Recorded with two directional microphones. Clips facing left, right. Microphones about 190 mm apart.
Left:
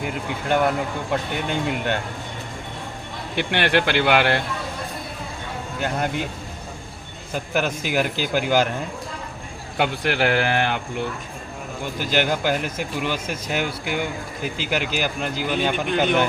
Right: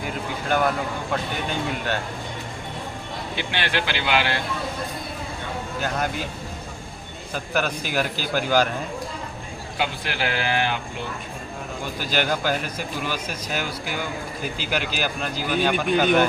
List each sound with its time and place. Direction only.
0.4 s speech: 20° left (ahead or behind)
3.3 s speech: 60° left (ahead or behind)
5.8 s speech: 20° left (ahead or behind)
7.3 s speech: 15° left (ahead or behind)
9.7 s speech: 60° left (ahead or behind)
11.9 s speech: 15° left (ahead or behind)